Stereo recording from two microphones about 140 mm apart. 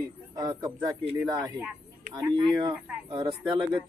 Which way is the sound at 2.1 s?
25° right (ahead or behind).